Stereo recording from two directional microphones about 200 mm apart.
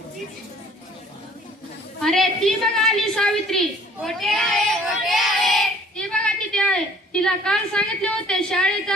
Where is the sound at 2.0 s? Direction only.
Centre (ahead or behind).